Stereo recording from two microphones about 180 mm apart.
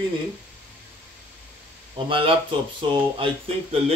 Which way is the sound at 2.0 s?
30° right (ahead or behind).